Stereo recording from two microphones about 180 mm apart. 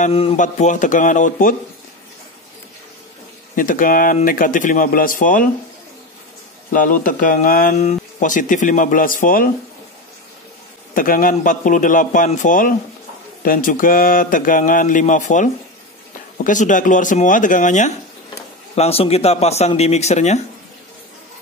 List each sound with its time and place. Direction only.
0.0 s speech: 35° left (ahead or behind)
3.5 s speech: 50° left (ahead or behind)
6.7 s speech: 50° left (ahead or behind)
11.0 s speech: 50° left (ahead or behind)